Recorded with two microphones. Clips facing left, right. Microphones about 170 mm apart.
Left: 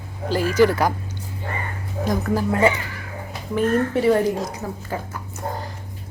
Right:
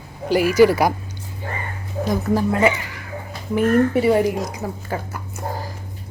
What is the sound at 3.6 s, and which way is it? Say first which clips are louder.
Speech: right 3 dB; 10° right (ahead or behind).